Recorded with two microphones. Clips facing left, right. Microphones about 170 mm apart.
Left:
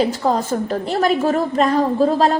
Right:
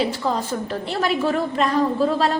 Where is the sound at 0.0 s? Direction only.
45° left (ahead or behind).